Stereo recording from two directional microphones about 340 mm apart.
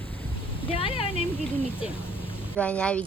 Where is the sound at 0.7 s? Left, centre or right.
Centre.